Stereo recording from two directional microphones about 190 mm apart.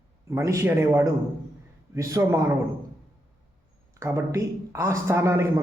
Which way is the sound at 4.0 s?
15° right (ahead or behind).